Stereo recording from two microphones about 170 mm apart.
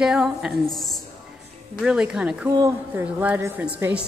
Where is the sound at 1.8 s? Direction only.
5° right (ahead or behind).